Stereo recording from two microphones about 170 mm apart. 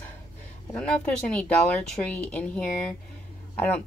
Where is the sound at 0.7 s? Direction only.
5° left (ahead or behind).